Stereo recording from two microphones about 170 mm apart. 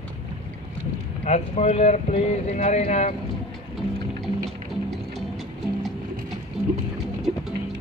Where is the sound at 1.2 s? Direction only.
40° left (ahead or behind).